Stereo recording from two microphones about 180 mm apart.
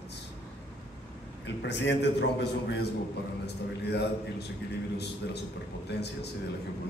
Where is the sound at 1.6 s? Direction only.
75° left (ahead or behind).